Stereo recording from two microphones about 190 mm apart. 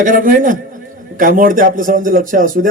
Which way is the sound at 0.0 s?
45° right (ahead or behind).